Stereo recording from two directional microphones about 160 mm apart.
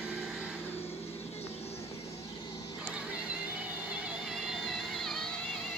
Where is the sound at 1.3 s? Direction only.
40° left (ahead or behind).